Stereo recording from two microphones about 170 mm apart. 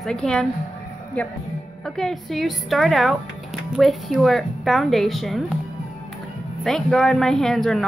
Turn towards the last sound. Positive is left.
turn(degrees=0)  # may be behind; listen again after turning